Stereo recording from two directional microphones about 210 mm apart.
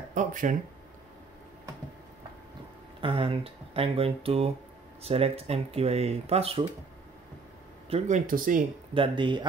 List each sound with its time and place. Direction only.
0.1 s speech: 40° right (ahead or behind)
3.0 s speech: 25° right (ahead or behind)
7.9 s speech: 35° right (ahead or behind)
8.9 s speech: 25° right (ahead or behind)